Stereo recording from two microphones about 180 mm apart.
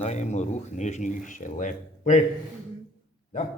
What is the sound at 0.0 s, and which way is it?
Speech, 40° left (ahead or behind).